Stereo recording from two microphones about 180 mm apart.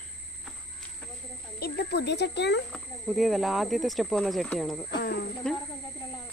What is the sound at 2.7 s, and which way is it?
Speech, centre (ahead or behind).